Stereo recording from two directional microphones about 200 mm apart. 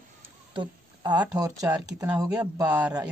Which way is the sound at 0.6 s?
20° right (ahead or behind).